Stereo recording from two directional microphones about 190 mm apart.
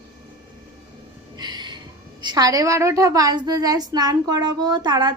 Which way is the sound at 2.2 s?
20° right (ahead or behind).